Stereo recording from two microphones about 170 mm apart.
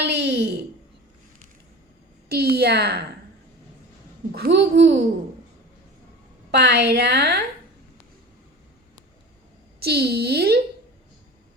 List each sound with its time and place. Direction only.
0.0 s a sound: 75° right (ahead or behind)
2.3 s speech: 65° right (ahead or behind)
4.3 s a child's voice: 80° right
6.5 s a woman's voice: 80° right
9.8 s speech: 65° right (ahead or behind)